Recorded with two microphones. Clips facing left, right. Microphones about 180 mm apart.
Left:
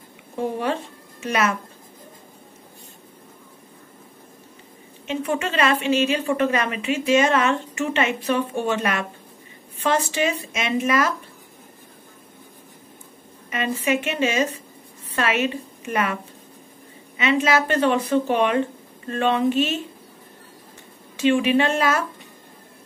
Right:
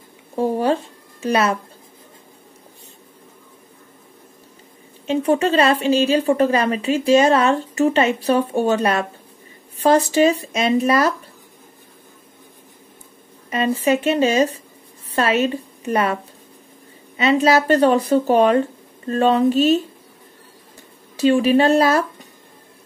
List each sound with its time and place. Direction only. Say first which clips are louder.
0.4 s a woman's voice: right 6 dB; 35° right (ahead or behind)
5.0 s a woman's voice: right 7 dB; 35° right (ahead or behind)
13.5 s a woman's voice: right 5 dB; 35° right (ahead or behind)
17.2 s a woman's voice: right 4 dB; 35° right (ahead or behind)
21.2 s a woman's voice: right 4 dB; 40° right (ahead or behind)